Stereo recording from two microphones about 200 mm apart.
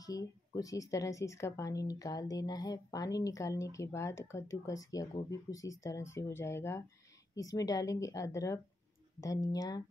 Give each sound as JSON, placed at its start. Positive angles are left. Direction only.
{"t": 0.0, "sound": "a woman's voice", "side_deg": 15}